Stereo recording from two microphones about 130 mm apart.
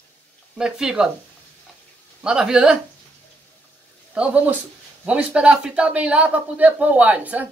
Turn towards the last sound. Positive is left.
turn(degrees=-10)  # may be behind; listen again after turning